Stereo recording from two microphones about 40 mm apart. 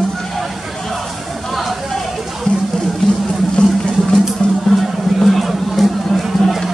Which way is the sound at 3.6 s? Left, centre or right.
Left.